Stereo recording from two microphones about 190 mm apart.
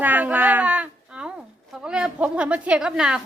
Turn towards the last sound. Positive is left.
turn(degrees=-5)  # may be behind; listen again after turning